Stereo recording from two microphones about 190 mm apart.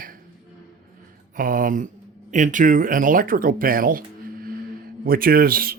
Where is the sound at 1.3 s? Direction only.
45° right (ahead or behind).